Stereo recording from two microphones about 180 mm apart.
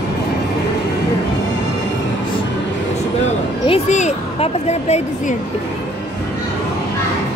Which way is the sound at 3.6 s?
35° left (ahead or behind).